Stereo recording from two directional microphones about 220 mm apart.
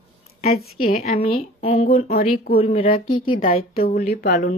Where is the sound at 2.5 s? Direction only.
25° left (ahead or behind).